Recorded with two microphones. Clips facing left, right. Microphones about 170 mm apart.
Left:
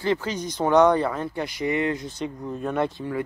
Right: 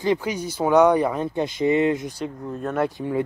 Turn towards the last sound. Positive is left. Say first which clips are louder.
# right 4 dB
turn(degrees=-20)  # may be behind; listen again after turning